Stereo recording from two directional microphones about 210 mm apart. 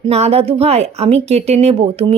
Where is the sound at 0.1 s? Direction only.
30° right (ahead or behind).